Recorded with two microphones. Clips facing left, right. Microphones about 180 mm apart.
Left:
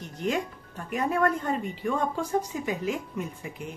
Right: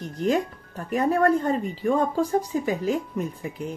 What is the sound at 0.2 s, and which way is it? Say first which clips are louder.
Speech: right 5 dB; 40° right (ahead or behind).